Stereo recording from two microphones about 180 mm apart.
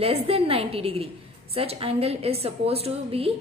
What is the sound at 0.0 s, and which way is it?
A woman's voice, 30° right (ahead or behind).